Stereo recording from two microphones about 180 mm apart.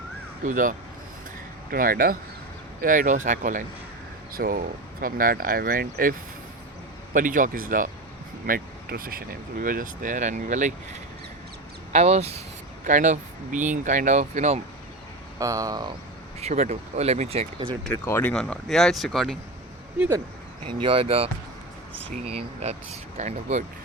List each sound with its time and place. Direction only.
0.4 s speech: 45° right (ahead or behind)
11.9 s speech: 40° right (ahead or behind)
15.4 s speech: 20° right (ahead or behind)
16.4 s speech: 40° right (ahead or behind)
17.9 s speech: 15° left (ahead or behind)
20.0 s speech: 15° right (ahead or behind)
20.7 s speech: 25° right (ahead or behind)